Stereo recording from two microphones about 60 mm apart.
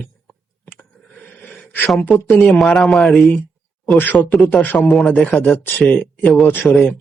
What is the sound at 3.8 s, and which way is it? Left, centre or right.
Speech, left.